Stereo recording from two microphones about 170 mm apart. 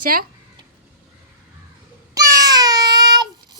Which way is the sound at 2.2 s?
20° right (ahead or behind).